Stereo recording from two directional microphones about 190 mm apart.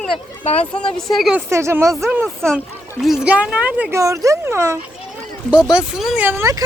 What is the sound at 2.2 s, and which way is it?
Speech, 5° left (ahead or behind).